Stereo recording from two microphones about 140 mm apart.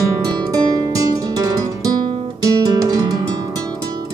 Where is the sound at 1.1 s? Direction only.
25° right (ahead or behind).